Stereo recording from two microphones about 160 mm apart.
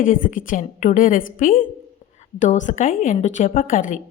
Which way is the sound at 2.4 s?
50° left (ahead or behind).